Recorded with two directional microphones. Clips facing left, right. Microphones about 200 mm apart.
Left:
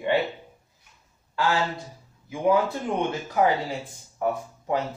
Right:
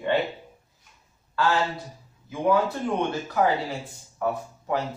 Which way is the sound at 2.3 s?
15° left (ahead or behind).